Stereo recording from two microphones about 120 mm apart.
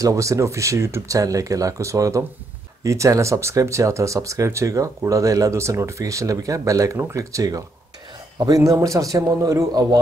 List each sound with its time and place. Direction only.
0.0 s speech: 25° right (ahead or behind)